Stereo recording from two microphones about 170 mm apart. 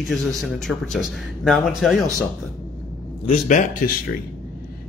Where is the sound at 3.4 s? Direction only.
45° left (ahead or behind).